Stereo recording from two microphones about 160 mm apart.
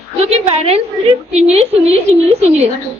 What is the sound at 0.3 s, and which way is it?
A woman's voice, 40° right (ahead or behind).